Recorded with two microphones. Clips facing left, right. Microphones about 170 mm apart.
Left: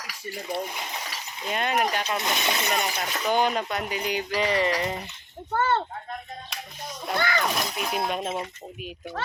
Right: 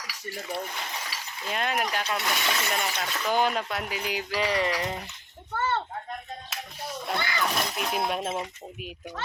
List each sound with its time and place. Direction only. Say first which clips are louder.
0.3 s speech: left 3 dB; 15° left (ahead or behind)
1.5 s speech: left 3 dB; centre (ahead or behind)
2.0 s speech: left 2 dB; 20° left (ahead or behind)
3.3 s speech: left 1 dB; centre (ahead or behind)
5.5 s speech: left 4 dB; 50° left (ahead or behind)
6.5 s a sound: right 2 dB; 5° right (ahead or behind)
7.5 s speech: even; centre (ahead or behind)